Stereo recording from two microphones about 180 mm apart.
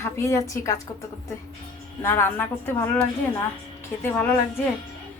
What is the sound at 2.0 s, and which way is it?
A woman's voice, 15° left (ahead or behind).